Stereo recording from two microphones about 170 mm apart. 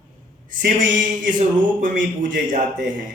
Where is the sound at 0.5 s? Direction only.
50° right (ahead or behind).